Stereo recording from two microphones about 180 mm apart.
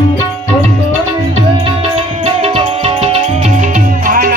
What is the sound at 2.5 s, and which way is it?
Music, 35° right (ahead or behind).